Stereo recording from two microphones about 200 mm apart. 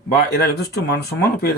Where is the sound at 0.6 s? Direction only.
55° left (ahead or behind).